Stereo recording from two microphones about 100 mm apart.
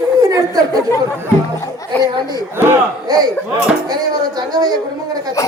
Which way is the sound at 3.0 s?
40° right (ahead or behind).